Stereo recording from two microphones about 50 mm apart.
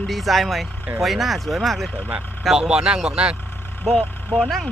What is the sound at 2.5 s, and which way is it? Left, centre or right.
Speech, centre.